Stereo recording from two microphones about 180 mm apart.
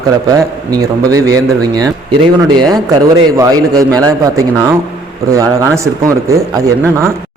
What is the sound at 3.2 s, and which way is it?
Speech, 20° right (ahead or behind).